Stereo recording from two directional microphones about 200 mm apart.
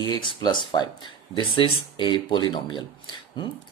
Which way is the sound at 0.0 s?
20° left (ahead or behind).